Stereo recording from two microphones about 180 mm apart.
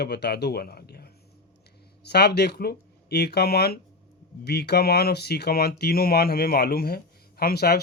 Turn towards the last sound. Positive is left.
turn(degrees=60)  # may be behind; listen again after turning